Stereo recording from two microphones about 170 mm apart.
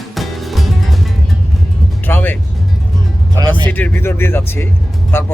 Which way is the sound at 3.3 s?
25° right (ahead or behind).